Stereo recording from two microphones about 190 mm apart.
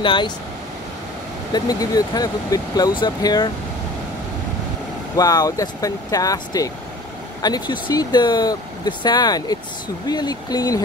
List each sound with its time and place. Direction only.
0.0 s speech: 25° left (ahead or behind)
1.5 s speech: 20° left (ahead or behind)
5.1 s speech: 20° left (ahead or behind)